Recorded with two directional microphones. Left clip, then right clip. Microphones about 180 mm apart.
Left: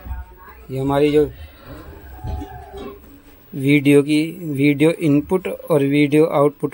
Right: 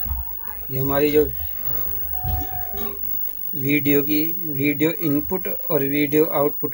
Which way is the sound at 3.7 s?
40° left (ahead or behind).